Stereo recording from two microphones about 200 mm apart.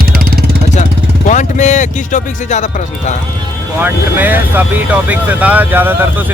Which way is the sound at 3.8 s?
10° right (ahead or behind).